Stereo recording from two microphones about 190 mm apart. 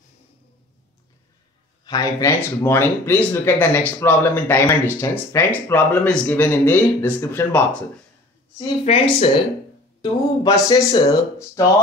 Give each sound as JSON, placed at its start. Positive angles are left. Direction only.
{"t": 1.9, "sound": "speech", "side_deg": 20}
{"t": 8.5, "sound": "a woman's voice", "side_deg": 30}
{"t": 10.4, "sound": "speech", "side_deg": 20}